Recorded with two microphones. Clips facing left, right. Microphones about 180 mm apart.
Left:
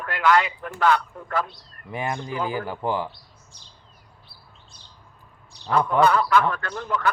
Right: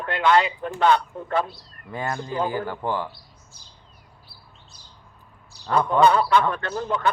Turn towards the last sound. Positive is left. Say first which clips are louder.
# right 2 dB
turn(degrees=-25)  # may be behind; listen again after turning